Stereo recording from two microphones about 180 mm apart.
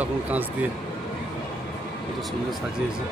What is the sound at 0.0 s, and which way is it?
Speech, 10° right (ahead or behind).